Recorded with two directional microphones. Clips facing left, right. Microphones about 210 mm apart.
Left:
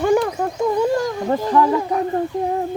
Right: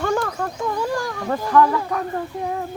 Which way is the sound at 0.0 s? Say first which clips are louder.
Left 5 dB; 15° left (ahead or behind).